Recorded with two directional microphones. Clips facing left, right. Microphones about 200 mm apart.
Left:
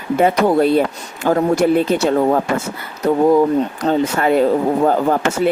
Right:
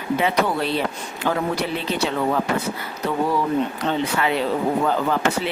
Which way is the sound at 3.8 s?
45° left (ahead or behind).